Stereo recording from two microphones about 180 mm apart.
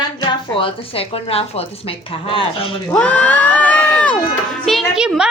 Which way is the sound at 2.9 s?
5° left (ahead or behind).